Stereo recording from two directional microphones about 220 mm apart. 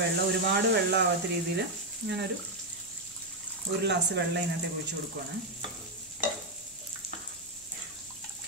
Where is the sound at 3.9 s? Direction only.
50° right (ahead or behind).